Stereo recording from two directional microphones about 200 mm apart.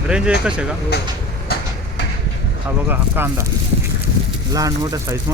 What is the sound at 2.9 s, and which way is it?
Speech, 10° right (ahead or behind).